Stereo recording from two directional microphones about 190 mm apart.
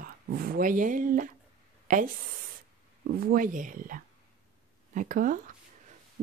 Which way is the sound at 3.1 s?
50° right (ahead or behind).